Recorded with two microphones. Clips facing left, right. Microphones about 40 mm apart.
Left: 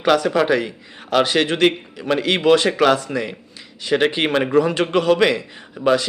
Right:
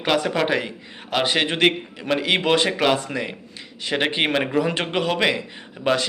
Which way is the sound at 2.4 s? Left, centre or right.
Right.